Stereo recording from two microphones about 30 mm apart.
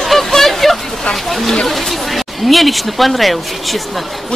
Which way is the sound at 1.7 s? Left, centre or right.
Centre.